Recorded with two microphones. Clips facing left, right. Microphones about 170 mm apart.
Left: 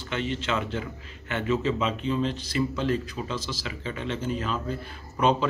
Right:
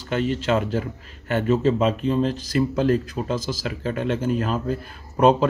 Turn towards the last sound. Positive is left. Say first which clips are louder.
# right 6 dB
turn(degrees=-45)  # may be behind; listen again after turning